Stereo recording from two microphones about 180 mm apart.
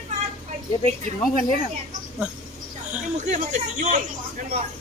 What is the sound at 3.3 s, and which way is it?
Speech, 45° right (ahead or behind).